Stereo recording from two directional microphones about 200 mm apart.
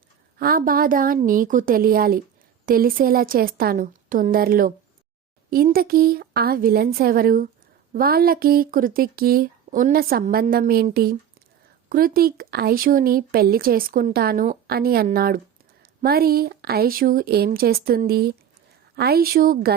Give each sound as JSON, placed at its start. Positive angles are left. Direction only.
{"t": 0.3, "sound": "speech", "side_deg": -45}